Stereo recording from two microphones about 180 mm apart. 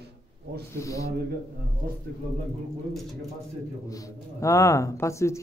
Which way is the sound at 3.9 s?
15° left (ahead or behind).